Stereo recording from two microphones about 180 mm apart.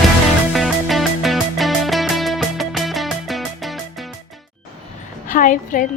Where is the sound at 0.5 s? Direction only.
Centre (ahead or behind).